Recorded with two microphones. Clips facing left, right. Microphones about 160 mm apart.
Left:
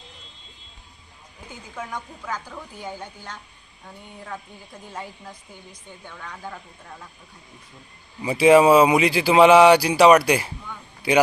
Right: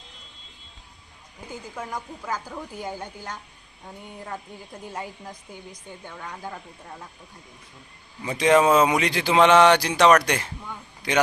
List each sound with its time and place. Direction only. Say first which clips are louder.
1.8 s speech: left 2 dB; 5° right (ahead or behind)
4.9 s speech: right 1 dB; 10° right (ahead or behind)
8.2 s speech: left 4 dB; 10° left (ahead or behind)